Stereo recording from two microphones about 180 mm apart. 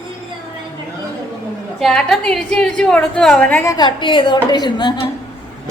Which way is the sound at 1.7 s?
Centre (ahead or behind).